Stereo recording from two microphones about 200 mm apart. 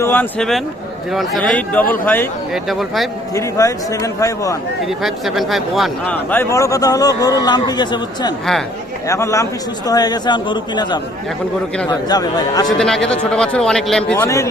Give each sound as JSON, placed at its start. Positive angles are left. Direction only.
{"t": 0.0, "sound": "a man's voice", "side_deg": 10}
{"t": 2.5, "sound": "a man's voice", "side_deg": 0}
{"t": 3.3, "sound": "a man's voice", "side_deg": 15}
{"t": 4.9, "sound": "a man's voice", "side_deg": 0}
{"t": 6.3, "sound": "a man's voice", "side_deg": 15}
{"t": 12.8, "sound": "a man's voice", "side_deg": 5}
{"t": 14.3, "sound": "a man's voice", "side_deg": 15}